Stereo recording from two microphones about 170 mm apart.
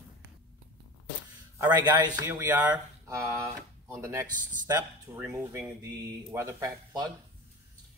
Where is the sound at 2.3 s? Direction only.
10° right (ahead or behind).